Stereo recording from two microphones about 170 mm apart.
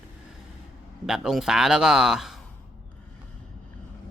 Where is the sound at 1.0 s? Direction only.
5° right (ahead or behind).